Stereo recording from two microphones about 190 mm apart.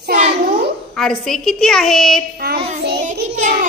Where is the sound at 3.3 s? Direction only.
45° right (ahead or behind).